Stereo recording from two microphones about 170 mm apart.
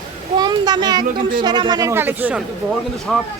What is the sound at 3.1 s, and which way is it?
Speech, centre (ahead or behind).